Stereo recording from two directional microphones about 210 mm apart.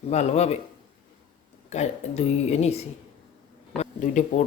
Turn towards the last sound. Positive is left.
turn(degrees=35)  # may be behind; listen again after turning